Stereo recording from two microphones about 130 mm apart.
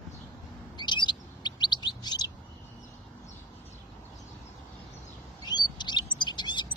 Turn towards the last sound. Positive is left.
turn(degrees=35)  # may be behind; listen again after turning